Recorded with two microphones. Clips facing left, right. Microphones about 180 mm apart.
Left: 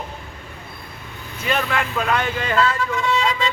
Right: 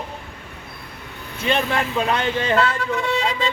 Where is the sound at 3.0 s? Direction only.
55° right (ahead or behind).